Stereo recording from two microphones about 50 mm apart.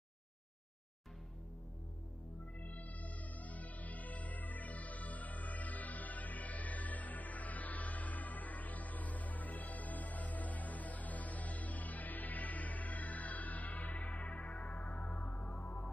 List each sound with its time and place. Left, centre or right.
2.6 s music: left